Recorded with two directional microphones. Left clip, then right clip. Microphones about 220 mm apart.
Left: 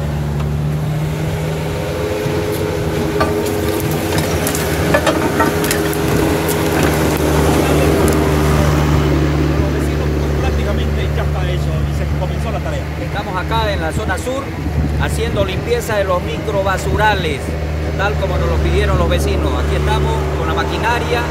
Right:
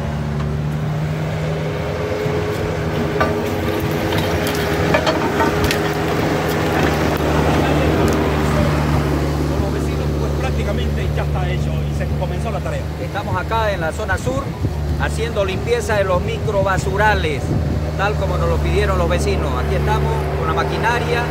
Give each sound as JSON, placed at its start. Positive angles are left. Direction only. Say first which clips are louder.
{"t": 4.8, "sound": "a sound", "louder": "left 3 dB", "side_deg": 30}
{"t": 6.3, "sound": "vehicle", "louder": "left 2 dB", "side_deg": 20}
{"t": 8.1, "sound": "vehicle", "louder": "left 3 dB", "side_deg": 50}
{"t": 15.3, "sound": "speech", "louder": "even", "side_deg": -10}
{"t": 18.8, "sound": "speech", "louder": "left 1 dB", "side_deg": -5}
{"t": 20.5, "sound": "speech", "louder": "left 1 dB", "side_deg": -5}